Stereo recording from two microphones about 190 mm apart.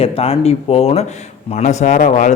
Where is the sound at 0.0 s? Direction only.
30° left (ahead or behind).